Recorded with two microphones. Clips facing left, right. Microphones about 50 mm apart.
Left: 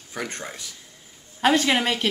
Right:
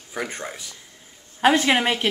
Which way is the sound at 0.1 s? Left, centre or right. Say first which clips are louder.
Right 2 dB; centre.